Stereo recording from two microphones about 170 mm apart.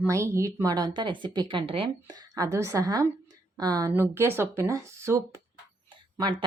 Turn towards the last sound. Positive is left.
turn(degrees=-25)  # may be behind; listen again after turning